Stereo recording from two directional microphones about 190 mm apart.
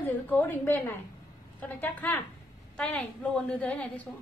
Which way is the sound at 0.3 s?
10° left (ahead or behind).